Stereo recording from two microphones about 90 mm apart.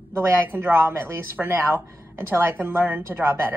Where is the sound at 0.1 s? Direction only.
30° right (ahead or behind).